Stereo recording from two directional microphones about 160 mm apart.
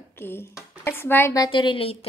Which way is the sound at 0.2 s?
15° left (ahead or behind).